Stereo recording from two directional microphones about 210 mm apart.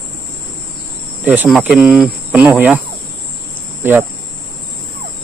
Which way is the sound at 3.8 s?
10° right (ahead or behind).